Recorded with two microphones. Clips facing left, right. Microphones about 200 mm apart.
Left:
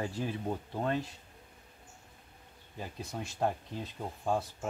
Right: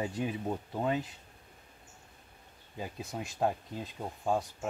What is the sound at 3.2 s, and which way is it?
Speech, 10° right (ahead or behind).